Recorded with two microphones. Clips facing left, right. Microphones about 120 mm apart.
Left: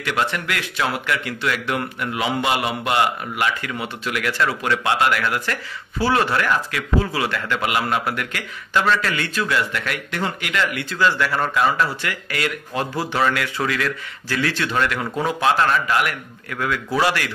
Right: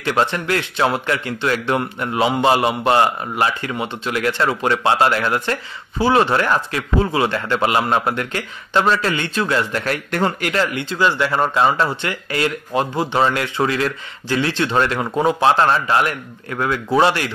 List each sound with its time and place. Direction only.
0.0 s speech: 30° right (ahead or behind)